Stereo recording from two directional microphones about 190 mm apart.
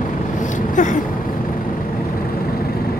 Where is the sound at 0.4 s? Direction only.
40° left (ahead or behind).